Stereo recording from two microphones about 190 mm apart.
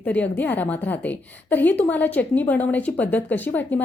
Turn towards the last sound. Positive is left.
turn(degrees=10)  # may be behind; listen again after turning